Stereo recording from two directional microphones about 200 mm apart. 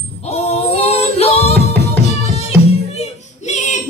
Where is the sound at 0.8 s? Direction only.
30° left (ahead or behind).